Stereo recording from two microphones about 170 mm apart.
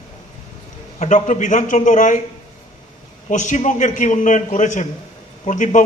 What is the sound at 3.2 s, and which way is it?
A man's voice, 45° left (ahead or behind).